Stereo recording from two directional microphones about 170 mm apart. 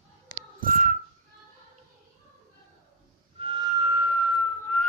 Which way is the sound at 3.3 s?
30° right (ahead or behind).